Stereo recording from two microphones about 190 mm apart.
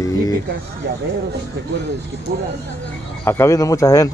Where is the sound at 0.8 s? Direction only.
60° right (ahead or behind).